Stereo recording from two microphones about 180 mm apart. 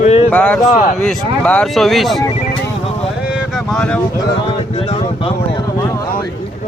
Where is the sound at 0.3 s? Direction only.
10° left (ahead or behind).